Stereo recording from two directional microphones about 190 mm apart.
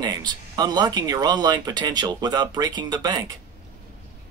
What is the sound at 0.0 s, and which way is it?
Speech, 20° right (ahead or behind).